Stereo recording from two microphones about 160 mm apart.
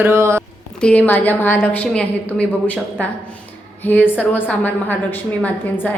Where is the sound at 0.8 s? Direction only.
10° left (ahead or behind).